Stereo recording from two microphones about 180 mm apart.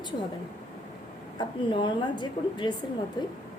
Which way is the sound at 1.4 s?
25° left (ahead or behind).